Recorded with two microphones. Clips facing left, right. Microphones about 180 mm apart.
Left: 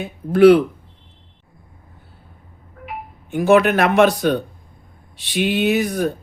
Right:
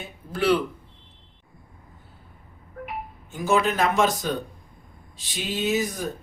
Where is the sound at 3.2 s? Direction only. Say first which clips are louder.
Left 9 dB; 65° left (ahead or behind).